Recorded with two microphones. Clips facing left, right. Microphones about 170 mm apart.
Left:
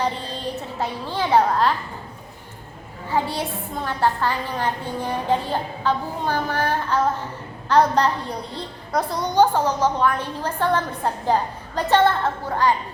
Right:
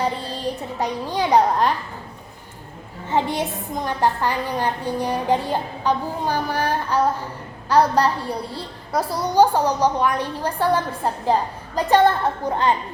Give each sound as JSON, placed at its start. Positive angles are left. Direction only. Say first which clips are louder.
{"t": 0.4, "sound": "a child's voice", "louder": "right 2 dB", "side_deg": -15}
{"t": 3.1, "sound": "a woman's voice", "louder": "right 2 dB", "side_deg": -20}